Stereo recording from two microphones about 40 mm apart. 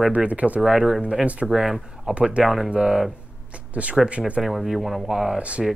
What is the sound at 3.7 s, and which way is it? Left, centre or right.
Speech, right.